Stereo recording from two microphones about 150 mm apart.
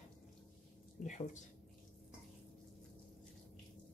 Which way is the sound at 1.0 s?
55° left (ahead or behind).